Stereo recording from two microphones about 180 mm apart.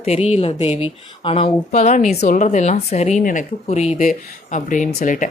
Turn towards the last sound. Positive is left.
turn(degrees=45)  # may be behind; listen again after turning